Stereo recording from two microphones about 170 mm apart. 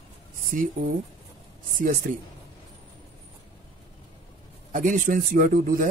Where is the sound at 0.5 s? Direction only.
55° right (ahead or behind).